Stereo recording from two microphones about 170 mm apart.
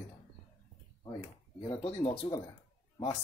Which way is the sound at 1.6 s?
35° left (ahead or behind).